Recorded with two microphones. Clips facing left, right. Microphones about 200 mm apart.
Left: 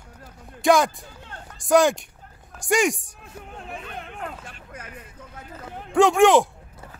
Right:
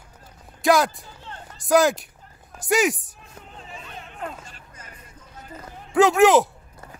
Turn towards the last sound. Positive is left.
turn(degrees=0)  # may be behind; listen again after turning